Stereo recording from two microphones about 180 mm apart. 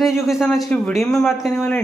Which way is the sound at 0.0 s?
Centre (ahead or behind).